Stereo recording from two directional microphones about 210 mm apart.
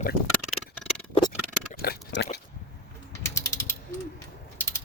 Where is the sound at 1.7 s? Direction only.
45° left (ahead or behind).